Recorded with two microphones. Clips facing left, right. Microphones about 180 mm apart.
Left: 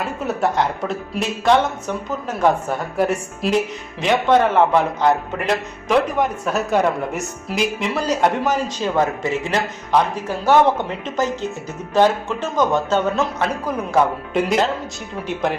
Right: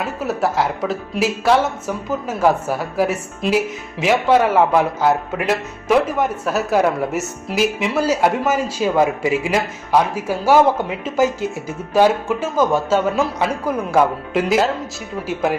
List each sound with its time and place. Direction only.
0.0 s a man's voice: centre (ahead or behind)